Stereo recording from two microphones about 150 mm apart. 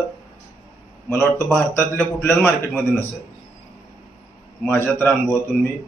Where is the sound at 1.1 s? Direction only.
15° left (ahead or behind).